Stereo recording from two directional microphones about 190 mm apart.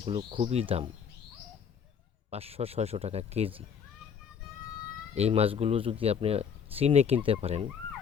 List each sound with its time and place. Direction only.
0.0 s speech: 25° right (ahead or behind)
2.3 s speech: 30° right (ahead or behind)
5.1 s speech: 30° right (ahead or behind)